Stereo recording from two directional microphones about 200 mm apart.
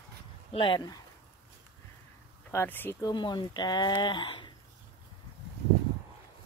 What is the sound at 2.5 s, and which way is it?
Speech, 10° left (ahead or behind).